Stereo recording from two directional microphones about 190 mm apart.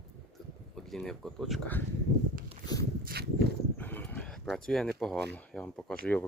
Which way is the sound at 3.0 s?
55° right (ahead or behind).